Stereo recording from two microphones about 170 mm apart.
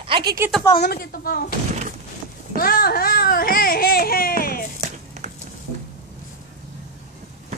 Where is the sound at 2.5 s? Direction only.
60° left (ahead or behind).